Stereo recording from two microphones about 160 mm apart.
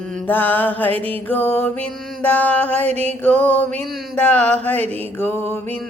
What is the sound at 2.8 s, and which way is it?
Music, 40° right (ahead or behind).